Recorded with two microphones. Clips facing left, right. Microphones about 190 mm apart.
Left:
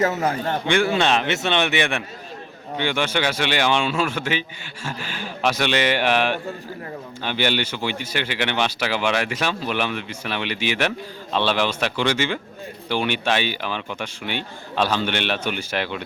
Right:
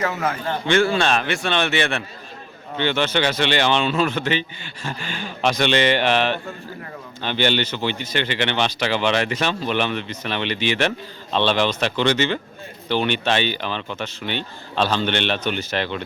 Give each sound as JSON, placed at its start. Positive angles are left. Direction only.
{"t": 0.0, "sound": "a man's voice", "side_deg": 40}
{"t": 0.7, "sound": "speech", "side_deg": 15}